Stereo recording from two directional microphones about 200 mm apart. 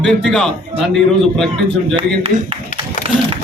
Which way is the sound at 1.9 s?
30° right (ahead or behind).